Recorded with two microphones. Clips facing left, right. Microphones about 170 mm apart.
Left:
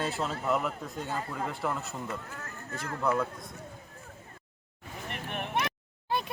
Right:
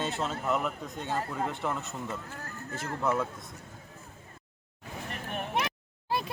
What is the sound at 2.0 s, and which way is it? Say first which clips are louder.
Speech: even; 25° right (ahead or behind).